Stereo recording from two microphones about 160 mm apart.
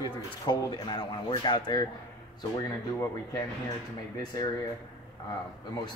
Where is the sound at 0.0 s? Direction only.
25° left (ahead or behind).